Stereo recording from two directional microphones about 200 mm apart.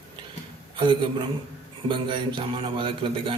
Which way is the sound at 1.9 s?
25° right (ahead or behind).